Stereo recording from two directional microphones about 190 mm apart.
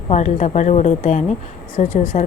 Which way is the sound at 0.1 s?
35° left (ahead or behind).